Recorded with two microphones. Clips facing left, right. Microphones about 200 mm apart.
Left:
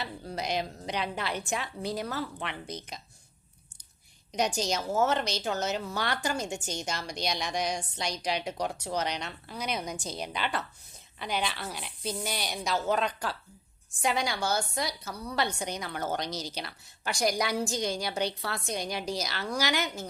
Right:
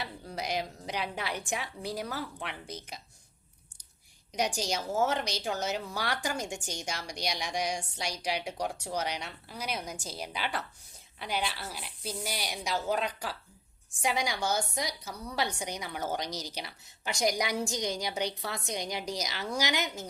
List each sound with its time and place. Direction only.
0.3 s a woman's voice: 10° right (ahead or behind)
4.3 s a woman's voice: 10° right (ahead or behind)